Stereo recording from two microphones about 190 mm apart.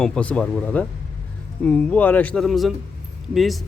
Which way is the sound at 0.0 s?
5° left (ahead or behind).